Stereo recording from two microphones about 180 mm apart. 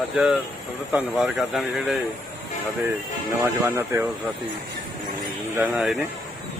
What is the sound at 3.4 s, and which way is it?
Speech, 15° right (ahead or behind).